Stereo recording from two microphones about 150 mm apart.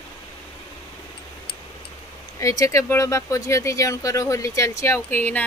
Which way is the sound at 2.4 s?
20° left (ahead or behind).